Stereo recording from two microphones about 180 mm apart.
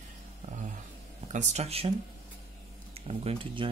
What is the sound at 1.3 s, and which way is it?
Speech, 35° right (ahead or behind).